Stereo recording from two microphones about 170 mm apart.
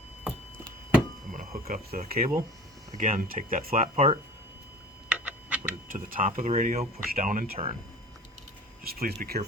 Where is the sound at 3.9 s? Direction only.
35° right (ahead or behind).